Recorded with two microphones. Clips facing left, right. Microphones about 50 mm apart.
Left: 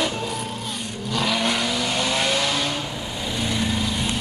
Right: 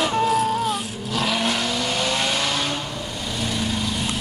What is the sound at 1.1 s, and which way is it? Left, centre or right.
Vehicle, centre.